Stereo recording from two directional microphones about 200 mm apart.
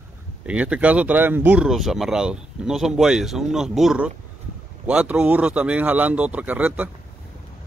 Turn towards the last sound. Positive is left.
turn(degrees=-10)  # may be behind; listen again after turning